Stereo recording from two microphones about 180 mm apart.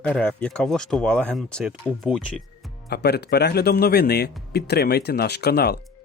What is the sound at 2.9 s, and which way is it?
Speech, 65° left (ahead or behind).